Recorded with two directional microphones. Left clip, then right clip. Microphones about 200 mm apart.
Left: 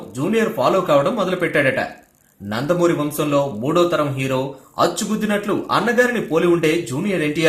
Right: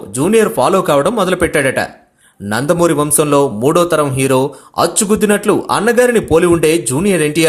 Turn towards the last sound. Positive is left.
turn(degrees=-45)  # may be behind; listen again after turning